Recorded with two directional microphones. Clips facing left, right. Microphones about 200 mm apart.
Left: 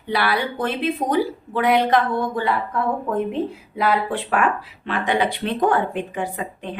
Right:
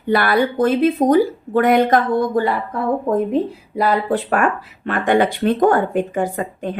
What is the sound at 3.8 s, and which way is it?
A woman's voice, 40° right (ahead or behind).